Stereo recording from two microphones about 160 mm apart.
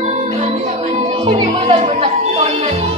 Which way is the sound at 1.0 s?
35° right (ahead or behind).